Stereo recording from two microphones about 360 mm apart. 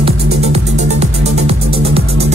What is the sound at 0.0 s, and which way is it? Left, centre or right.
Music, centre.